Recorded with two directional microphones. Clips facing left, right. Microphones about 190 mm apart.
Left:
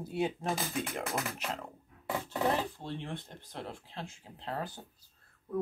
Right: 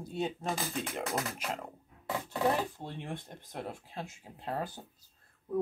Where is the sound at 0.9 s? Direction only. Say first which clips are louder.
Right 1 dB; 5° right (ahead or behind).